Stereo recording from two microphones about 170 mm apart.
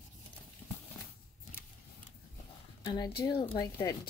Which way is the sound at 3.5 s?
20° left (ahead or behind).